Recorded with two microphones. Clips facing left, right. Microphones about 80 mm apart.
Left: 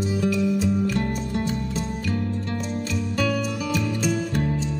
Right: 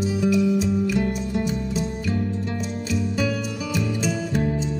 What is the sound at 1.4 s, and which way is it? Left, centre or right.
Music, centre.